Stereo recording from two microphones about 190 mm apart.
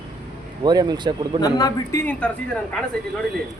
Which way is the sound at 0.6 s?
20° right (ahead or behind).